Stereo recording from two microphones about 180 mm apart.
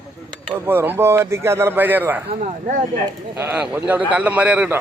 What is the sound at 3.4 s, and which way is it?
A man's voice, 10° right (ahead or behind).